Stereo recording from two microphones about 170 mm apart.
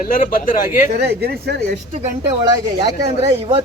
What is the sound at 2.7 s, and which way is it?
Speech, 35° right (ahead or behind).